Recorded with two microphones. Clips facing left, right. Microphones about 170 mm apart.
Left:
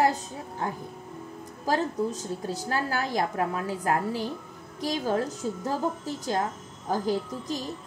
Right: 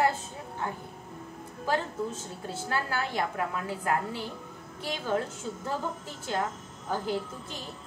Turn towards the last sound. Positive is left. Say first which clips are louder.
# left 4 dB
turn(degrees=40)  # may be behind; listen again after turning